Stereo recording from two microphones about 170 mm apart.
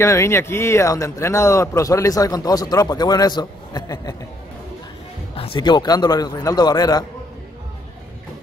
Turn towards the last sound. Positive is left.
turn(degrees=25)  # may be behind; listen again after turning